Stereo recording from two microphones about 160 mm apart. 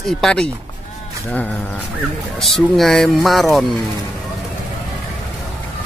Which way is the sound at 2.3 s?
Centre (ahead or behind).